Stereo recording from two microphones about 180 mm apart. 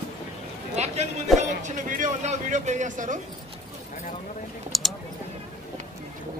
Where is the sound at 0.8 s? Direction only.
40° right (ahead or behind).